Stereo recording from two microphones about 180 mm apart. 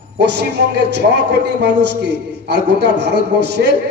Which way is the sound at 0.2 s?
65° right (ahead or behind).